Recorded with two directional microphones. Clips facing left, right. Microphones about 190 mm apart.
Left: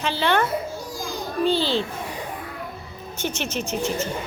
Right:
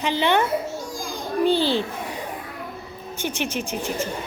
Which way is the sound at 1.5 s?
15° right (ahead or behind).